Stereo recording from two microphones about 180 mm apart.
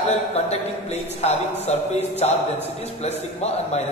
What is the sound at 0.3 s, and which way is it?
Speech, 35° left (ahead or behind).